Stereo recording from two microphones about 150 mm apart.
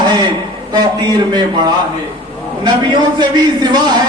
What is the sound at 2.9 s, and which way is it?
Speech, 30° right (ahead or behind).